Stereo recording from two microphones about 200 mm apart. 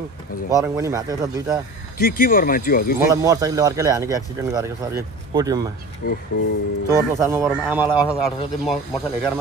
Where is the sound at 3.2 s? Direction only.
20° right (ahead or behind).